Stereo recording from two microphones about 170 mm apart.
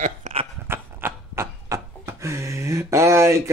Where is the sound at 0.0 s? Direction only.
45° right (ahead or behind).